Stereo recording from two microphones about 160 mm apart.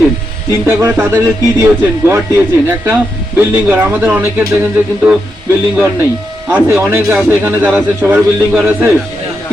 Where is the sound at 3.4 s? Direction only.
10° right (ahead or behind).